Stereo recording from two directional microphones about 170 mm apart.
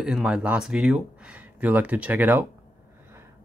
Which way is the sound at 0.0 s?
5° right (ahead or behind).